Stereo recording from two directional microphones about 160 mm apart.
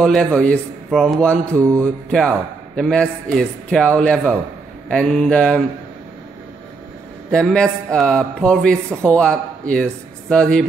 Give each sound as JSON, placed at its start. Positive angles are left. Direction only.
{"t": 0.0, "sound": "a man's voice", "side_deg": 5}
{"t": 1.4, "sound": "mantra", "side_deg": -20}
{"t": 1.8, "sound": "a man's voice", "side_deg": 5}
{"t": 7.2, "sound": "a man's voice", "side_deg": 5}